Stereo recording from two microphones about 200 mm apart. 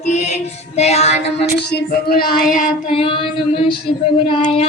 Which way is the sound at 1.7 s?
55° left (ahead or behind).